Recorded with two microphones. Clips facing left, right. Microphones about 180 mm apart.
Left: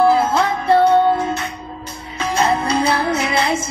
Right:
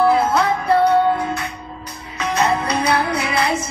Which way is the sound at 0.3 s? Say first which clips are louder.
Left 1 dB; 25° left (ahead or behind).